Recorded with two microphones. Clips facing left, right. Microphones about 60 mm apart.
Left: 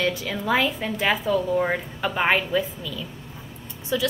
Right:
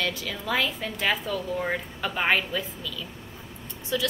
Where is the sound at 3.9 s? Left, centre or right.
Centre.